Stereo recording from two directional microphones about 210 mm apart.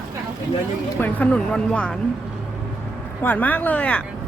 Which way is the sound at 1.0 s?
5° left (ahead or behind).